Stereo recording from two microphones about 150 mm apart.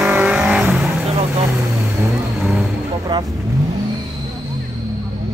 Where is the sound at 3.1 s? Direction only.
25° right (ahead or behind).